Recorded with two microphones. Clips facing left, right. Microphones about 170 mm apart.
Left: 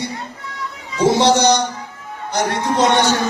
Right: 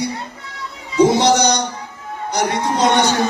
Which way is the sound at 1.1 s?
15° right (ahead or behind).